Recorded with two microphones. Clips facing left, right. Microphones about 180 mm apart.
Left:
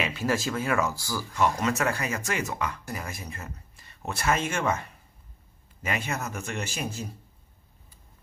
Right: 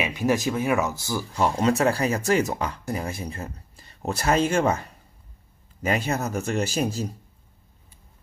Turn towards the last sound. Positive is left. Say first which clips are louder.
# right 8 dB
turn(degrees=-35)  # may be behind; listen again after turning